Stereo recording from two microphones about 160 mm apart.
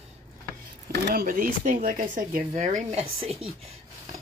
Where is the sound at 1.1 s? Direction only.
60° right (ahead or behind); by 3.4 s 40° right (ahead or behind).